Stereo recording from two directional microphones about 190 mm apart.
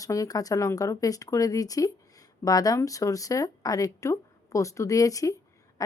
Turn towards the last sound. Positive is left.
turn(degrees=20)  # may be behind; listen again after turning